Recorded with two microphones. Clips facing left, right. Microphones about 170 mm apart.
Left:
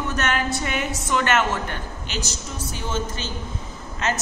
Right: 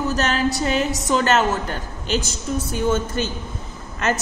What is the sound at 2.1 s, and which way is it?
A woman's voice, 50° right (ahead or behind).